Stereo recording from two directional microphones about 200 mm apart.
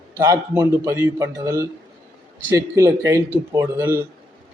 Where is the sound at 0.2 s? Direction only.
20° right (ahead or behind).